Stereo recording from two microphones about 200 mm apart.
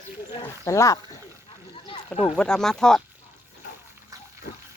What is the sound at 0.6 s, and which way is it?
Speech, 15° left (ahead or behind).